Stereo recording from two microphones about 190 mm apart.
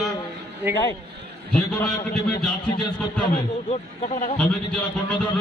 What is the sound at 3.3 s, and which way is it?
Speech, 40° left (ahead or behind).